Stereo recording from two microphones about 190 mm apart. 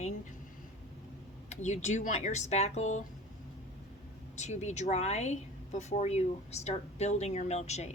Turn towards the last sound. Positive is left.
turn(degrees=35)  # may be behind; listen again after turning